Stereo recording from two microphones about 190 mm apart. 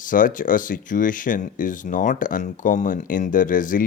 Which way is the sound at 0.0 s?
45° left (ahead or behind).